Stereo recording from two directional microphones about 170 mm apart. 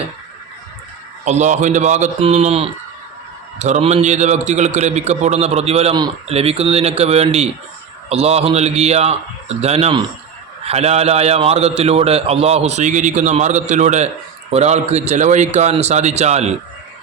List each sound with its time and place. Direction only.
1.2 s a man's voice: 45° right (ahead or behind)